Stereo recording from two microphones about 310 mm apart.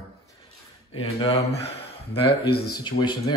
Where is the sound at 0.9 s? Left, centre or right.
Centre.